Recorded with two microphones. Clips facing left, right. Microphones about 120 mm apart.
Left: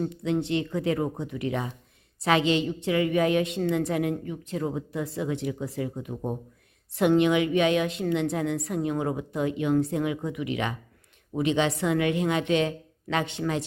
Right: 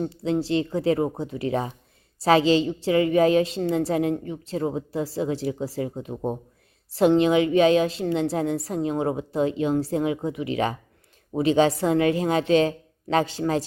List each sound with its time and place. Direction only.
0.0 s a woman's voice: 30° right (ahead or behind)